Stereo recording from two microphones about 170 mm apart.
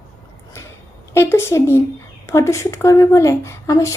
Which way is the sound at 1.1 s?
15° left (ahead or behind).